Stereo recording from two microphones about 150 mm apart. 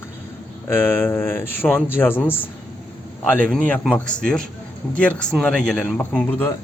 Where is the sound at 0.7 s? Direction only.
15° left (ahead or behind).